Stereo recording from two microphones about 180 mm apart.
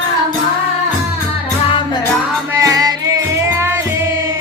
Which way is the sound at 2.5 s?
20° right (ahead or behind).